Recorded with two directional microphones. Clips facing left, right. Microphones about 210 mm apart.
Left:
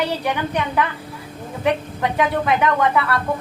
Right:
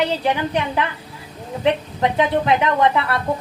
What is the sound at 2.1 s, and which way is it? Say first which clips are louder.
Speech: right 1 dB; 25° right (ahead or behind).